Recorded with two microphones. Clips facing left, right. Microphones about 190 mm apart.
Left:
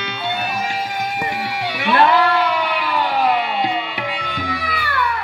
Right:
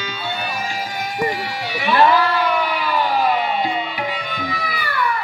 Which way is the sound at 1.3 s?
65° left (ahead or behind).